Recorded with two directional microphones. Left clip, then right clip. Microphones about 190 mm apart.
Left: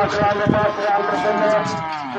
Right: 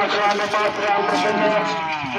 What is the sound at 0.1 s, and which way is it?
Speech, 45° right (ahead or behind).